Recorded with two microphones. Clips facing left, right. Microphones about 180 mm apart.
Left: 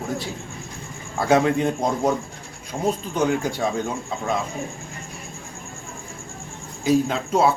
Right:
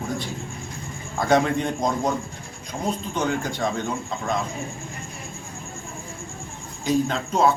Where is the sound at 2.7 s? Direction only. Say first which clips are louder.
Left 4 dB; 20° left (ahead or behind).